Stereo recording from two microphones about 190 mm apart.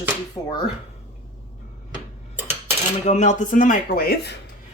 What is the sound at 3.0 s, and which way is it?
Speech, 40° left (ahead or behind).